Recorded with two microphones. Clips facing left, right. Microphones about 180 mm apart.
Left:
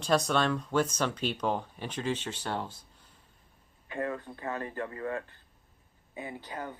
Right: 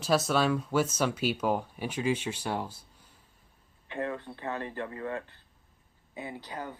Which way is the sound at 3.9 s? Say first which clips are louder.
Even; 25° right (ahead or behind).